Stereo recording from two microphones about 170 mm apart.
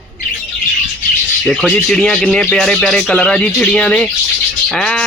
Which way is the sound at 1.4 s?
5° left (ahead or behind).